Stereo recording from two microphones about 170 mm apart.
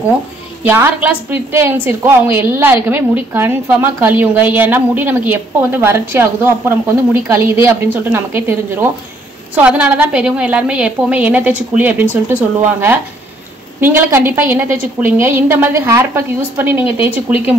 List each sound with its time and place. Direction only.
0.7 s a woman's voice: 10° right (ahead or behind)
9.6 s a woman's voice: 5° right (ahead or behind)